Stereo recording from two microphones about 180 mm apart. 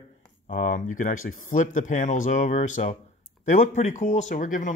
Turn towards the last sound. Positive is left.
turn(degrees=45)  # may be behind; listen again after turning